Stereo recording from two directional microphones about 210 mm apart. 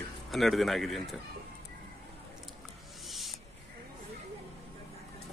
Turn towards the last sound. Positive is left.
turn(degrees=0)  # may be behind; listen again after turning